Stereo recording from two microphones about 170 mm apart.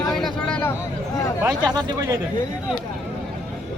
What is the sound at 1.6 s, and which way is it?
Speech, 25° right (ahead or behind).